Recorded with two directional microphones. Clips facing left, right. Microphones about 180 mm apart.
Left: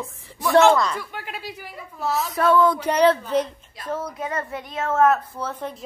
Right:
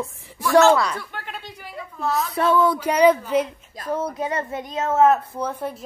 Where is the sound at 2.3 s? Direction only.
30° right (ahead or behind).